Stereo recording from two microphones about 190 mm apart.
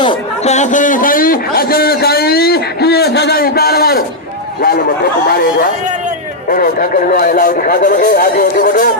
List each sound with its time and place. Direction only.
0.0 s a sound: 25° left (ahead or behind)
0.5 s a man's voice: 40° left (ahead or behind)
6.5 s a man's voice: 45° left (ahead or behind)